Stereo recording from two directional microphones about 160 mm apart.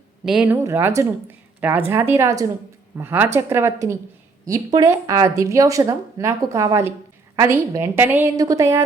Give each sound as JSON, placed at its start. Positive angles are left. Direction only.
{"t": 0.3, "sound": "a woman's voice", "side_deg": -10}